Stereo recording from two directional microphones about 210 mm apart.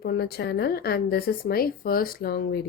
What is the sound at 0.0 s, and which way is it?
A woman's voice, 50° left (ahead or behind).